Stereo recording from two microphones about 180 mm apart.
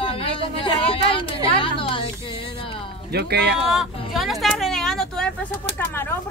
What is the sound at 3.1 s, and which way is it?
Speech, 65° right (ahead or behind).